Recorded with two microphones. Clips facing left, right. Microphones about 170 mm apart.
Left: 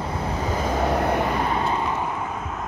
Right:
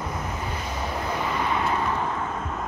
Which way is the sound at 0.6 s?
60° left (ahead or behind).